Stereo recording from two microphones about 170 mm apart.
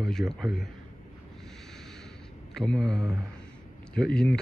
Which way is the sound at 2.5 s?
5° left (ahead or behind).